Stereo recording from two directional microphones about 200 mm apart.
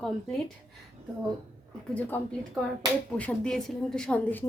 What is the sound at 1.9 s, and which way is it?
A woman's voice, 10° left (ahead or behind).